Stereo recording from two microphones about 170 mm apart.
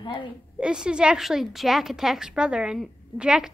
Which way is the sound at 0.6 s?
5° right (ahead or behind).